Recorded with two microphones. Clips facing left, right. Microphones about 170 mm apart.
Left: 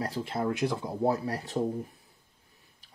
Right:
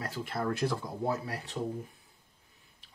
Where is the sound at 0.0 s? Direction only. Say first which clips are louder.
Left 4 dB; 30° left (ahead or behind).